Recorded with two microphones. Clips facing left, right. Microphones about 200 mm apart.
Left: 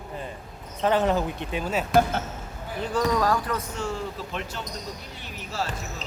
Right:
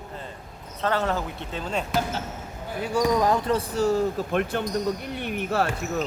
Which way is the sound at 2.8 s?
10° right (ahead or behind).